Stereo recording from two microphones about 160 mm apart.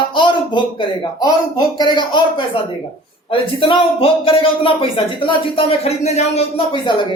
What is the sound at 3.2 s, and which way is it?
Speech, 35° left (ahead or behind).